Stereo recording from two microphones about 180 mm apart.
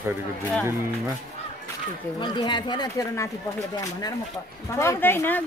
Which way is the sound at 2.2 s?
25° left (ahead or behind).